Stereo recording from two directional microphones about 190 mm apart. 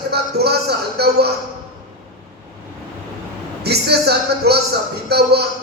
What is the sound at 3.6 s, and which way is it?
A man's voice, 60° right (ahead or behind).